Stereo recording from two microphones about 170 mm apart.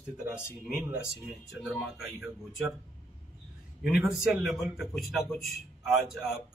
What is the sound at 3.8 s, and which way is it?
A man's voice, 5° right (ahead or behind).